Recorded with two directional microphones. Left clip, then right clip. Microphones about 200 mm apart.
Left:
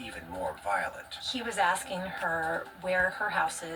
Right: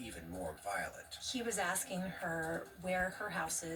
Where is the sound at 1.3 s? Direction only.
30° right (ahead or behind).